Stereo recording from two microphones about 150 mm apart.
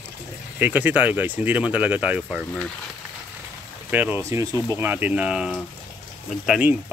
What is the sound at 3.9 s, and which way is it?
Speech, 15° right (ahead or behind).